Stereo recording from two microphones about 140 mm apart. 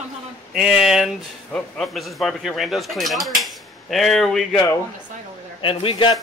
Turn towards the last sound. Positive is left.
turn(degrees=40)  # may be behind; listen again after turning